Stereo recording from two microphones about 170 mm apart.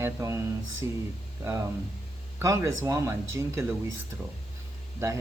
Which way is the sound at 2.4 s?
15° right (ahead or behind).